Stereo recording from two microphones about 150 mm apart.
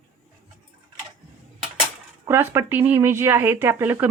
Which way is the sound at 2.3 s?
15° right (ahead or behind).